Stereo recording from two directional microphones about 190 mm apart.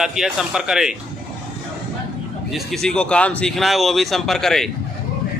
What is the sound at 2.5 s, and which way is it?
A man's voice, centre (ahead or behind).